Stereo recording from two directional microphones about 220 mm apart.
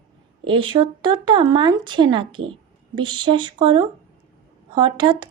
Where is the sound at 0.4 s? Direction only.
25° right (ahead or behind).